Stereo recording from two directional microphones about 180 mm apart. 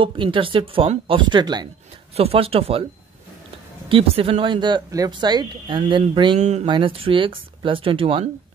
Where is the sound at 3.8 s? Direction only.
30° right (ahead or behind).